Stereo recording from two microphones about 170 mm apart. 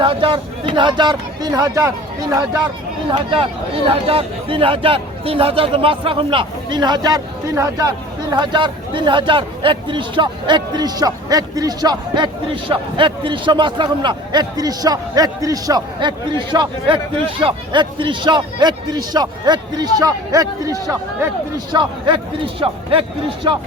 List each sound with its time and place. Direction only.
0.0 s speech: 30° right (ahead or behind)
3.1 s speech: 30° right (ahead or behind)